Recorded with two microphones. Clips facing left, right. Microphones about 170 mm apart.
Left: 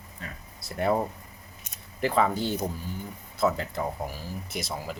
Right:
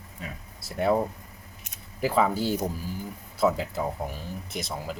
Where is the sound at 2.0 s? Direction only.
5° right (ahead or behind).